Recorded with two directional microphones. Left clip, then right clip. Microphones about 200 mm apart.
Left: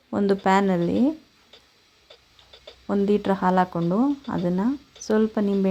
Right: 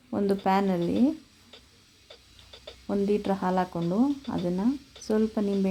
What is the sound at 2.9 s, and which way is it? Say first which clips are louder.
Speech: left 4 dB; 20° left (ahead or behind).